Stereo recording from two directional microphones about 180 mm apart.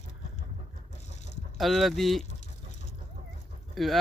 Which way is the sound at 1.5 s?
Centre (ahead or behind).